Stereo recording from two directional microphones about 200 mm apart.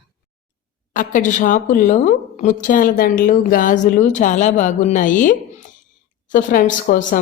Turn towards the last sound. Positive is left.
turn(degrees=40)  # may be behind; listen again after turning